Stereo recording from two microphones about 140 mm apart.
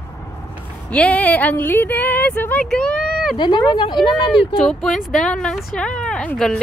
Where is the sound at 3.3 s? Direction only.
30° left (ahead or behind).